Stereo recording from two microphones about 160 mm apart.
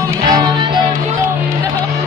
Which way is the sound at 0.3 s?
25° right (ahead or behind).